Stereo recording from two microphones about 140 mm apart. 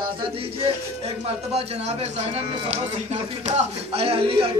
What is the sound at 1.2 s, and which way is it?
A man's voice, 50° right (ahead or behind).